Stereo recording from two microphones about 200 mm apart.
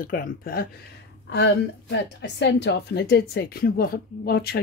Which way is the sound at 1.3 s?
60° left (ahead or behind).